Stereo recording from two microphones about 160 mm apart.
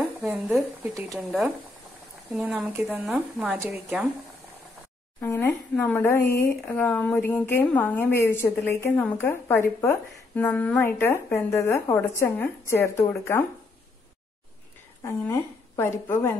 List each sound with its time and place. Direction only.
0.6 s speech: 10° right (ahead or behind)
1.1 s speech: centre (ahead or behind)
5.2 s speech: 15° left (ahead or behind)
15.0 s speech: 15° left (ahead or behind)